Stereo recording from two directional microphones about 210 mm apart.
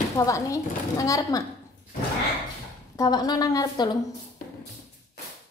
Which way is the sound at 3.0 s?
20° left (ahead or behind).